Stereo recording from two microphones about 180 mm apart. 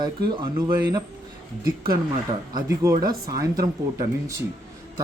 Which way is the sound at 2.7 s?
15° right (ahead or behind).